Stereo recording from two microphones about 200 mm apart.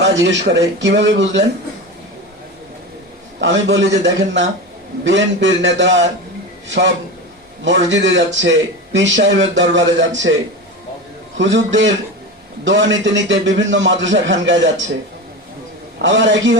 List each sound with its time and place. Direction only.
0.0 s speech: 60° right (ahead or behind)
3.4 s speech: 65° right (ahead or behind)
5.0 s speech: 65° right (ahead or behind)
11.3 s a man's voice: 65° right (ahead or behind)
16.0 s speech: 65° right (ahead or behind)